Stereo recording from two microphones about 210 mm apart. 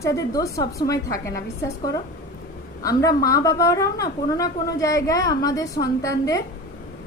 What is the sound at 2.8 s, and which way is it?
A woman's voice, 15° left (ahead or behind).